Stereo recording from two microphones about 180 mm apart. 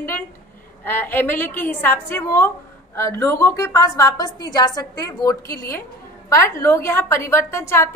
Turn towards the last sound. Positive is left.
turn(degrees=15)  # may be behind; listen again after turning